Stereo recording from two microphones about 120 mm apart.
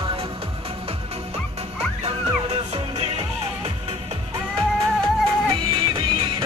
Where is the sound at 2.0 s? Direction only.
60° right (ahead or behind).